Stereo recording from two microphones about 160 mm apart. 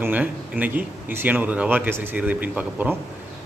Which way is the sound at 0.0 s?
10° right (ahead or behind).